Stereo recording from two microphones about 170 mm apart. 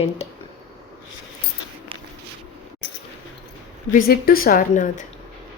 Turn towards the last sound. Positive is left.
turn(degrees=50)  # may be behind; listen again after turning